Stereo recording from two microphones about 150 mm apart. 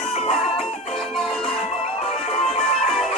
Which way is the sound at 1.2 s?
5° left (ahead or behind).